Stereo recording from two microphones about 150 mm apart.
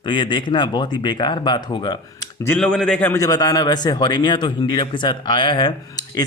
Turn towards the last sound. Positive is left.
turn(degrees=30)  # may be behind; listen again after turning